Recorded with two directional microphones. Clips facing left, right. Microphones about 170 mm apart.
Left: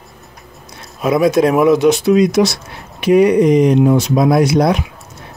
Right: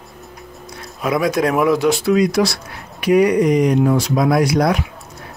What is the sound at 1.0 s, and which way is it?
Speech, 25° left (ahead or behind).